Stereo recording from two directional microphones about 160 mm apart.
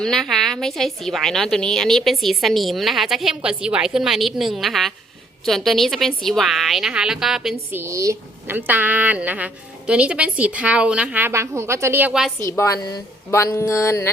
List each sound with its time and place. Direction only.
0.0 s a woman's voice: centre (ahead or behind)
7.7 s a woman's voice: 15° right (ahead or behind)
12.4 s speech: 15° left (ahead or behind)